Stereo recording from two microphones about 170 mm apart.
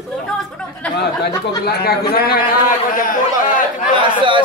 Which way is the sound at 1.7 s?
65° left (ahead or behind).